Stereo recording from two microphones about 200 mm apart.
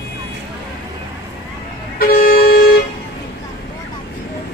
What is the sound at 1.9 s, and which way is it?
Vehicle, 50° left (ahead or behind).